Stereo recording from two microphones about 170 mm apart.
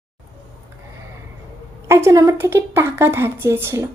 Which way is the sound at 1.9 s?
15° right (ahead or behind).